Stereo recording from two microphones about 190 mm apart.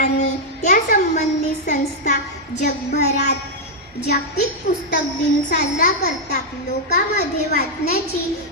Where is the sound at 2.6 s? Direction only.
60° left (ahead or behind).